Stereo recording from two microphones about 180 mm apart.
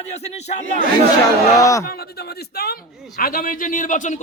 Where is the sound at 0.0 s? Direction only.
40° left (ahead or behind).